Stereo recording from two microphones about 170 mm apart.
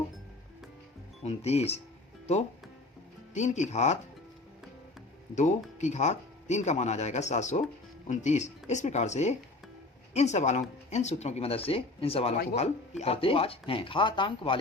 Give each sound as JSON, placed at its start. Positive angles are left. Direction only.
{"t": 1.2, "sound": "speech", "side_deg": 40}
{"t": 3.3, "sound": "speech", "side_deg": 45}
{"t": 5.3, "sound": "speech", "side_deg": 45}